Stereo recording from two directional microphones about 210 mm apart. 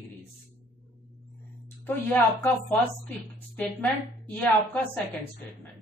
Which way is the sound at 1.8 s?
10° left (ahead or behind).